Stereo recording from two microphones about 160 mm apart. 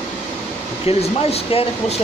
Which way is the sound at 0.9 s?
40° left (ahead or behind).